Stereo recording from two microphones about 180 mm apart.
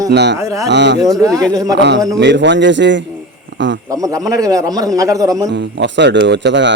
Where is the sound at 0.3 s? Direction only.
20° right (ahead or behind).